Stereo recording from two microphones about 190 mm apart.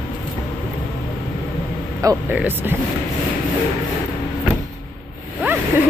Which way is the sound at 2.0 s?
20° right (ahead or behind).